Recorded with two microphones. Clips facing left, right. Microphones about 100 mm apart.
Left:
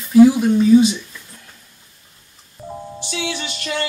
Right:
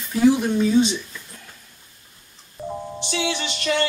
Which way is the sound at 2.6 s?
Centre (ahead or behind).